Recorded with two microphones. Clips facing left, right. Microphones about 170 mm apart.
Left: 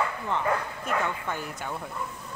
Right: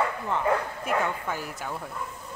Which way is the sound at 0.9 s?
5° right (ahead or behind).